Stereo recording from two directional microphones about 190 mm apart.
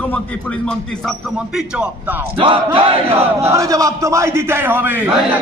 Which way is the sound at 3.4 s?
15° right (ahead or behind).